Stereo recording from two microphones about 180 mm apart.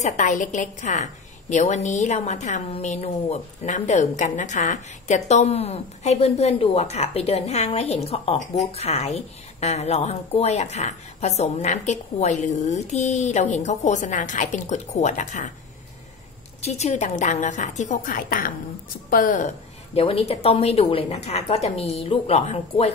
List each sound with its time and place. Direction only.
0.0 s a woman's voice: 45° left (ahead or behind)
16.6 s a woman's voice: 40° left (ahead or behind)